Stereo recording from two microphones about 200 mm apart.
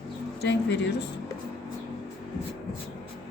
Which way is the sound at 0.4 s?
60° left (ahead or behind).